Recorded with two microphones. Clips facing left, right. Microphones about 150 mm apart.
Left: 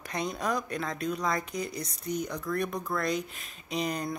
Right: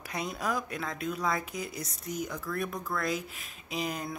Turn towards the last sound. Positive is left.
turn(degrees=-5)  # may be behind; listen again after turning